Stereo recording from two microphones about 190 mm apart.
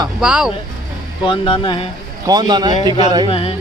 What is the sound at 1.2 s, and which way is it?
Speech, 25° left (ahead or behind).